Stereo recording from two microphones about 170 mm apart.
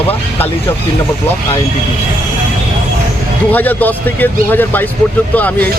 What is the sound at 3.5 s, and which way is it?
Speech, 10° left (ahead or behind).